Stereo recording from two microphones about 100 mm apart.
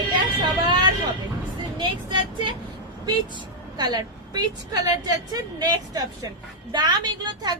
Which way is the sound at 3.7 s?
45° right (ahead or behind).